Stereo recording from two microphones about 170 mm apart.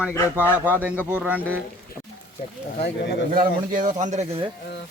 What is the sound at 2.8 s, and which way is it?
Speech, 80° left.